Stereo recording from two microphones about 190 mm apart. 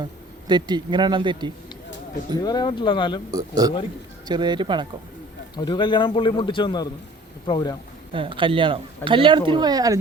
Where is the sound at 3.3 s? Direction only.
20° right (ahead or behind).